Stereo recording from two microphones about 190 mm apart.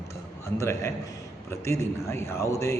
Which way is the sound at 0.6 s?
15° left (ahead or behind).